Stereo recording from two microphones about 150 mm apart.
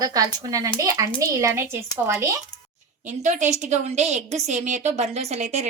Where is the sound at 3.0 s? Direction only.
55° right (ahead or behind).